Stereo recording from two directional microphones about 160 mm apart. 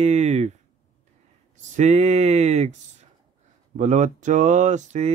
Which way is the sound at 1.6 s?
45° right (ahead or behind).